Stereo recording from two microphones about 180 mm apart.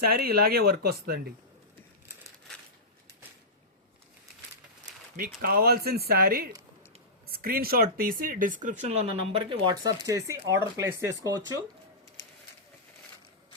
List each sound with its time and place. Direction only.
0.0 s speech: 60° right (ahead or behind)
5.4 s speech: 60° right (ahead or behind)
8.9 s speech: 35° right (ahead or behind)